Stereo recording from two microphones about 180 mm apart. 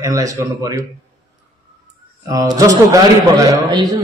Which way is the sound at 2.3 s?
20° right (ahead or behind).